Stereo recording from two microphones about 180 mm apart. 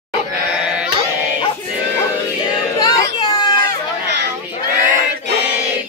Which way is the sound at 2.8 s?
25° left (ahead or behind).